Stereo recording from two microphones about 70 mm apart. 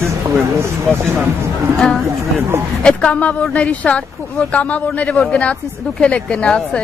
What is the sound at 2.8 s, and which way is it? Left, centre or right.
A woman's voice, centre.